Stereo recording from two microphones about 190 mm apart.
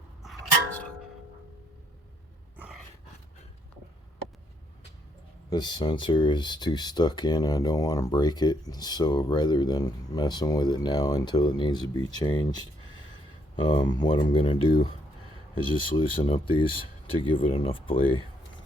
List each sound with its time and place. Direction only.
0.2 s music: centre (ahead or behind)
2.6 s dog: 5° right (ahead or behind)
5.5 s speech: 20° left (ahead or behind)
13.8 s speech: 20° left (ahead or behind)